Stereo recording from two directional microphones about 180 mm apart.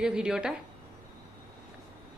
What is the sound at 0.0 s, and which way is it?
Speech, 5° right (ahead or behind).